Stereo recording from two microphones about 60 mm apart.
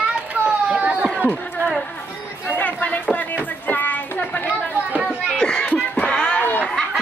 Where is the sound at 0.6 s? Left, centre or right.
Centre.